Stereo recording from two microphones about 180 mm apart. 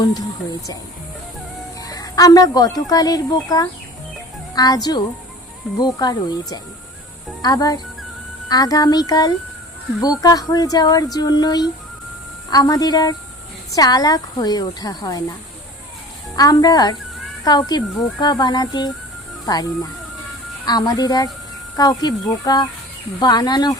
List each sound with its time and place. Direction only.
1.8 s a woman's voice: 20° left (ahead or behind)
16.3 s speech: 20° left (ahead or behind)